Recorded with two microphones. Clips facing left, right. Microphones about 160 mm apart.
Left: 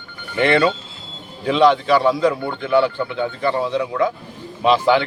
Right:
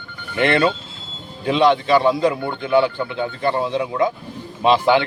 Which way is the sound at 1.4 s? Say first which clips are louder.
Left 1 dB; 25° right (ahead or behind).